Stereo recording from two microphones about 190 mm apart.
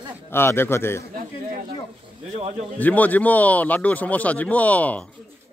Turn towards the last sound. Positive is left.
turn(degrees=10)  # may be behind; listen again after turning